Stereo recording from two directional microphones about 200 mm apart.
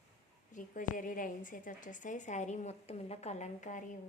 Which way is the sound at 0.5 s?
40° left (ahead or behind).